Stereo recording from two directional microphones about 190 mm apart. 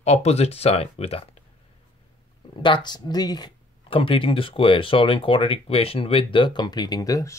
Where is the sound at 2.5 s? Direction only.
25° left (ahead or behind).